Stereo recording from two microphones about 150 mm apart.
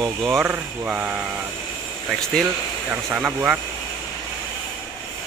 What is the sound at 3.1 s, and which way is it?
Speech, 10° right (ahead or behind).